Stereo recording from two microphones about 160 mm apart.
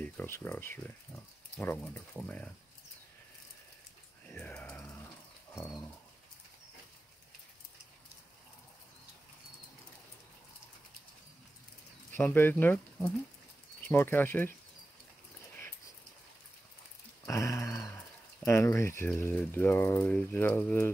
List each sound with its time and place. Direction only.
0.0 s speech: 10° left (ahead or behind)
4.3 s a sound: 10° left (ahead or behind)
12.1 s speech: 10° left (ahead or behind)
17.3 s speech: 20° left (ahead or behind)